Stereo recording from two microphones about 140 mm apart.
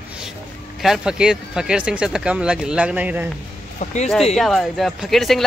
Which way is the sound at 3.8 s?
55° left (ahead or behind).